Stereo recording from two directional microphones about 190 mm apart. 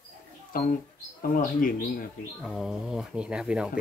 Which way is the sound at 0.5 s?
50° left (ahead or behind).